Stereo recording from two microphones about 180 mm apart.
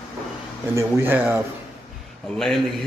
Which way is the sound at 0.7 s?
15° right (ahead or behind).